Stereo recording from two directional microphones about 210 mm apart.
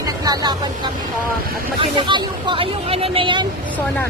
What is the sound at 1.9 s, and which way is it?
Speech, 20° right (ahead or behind).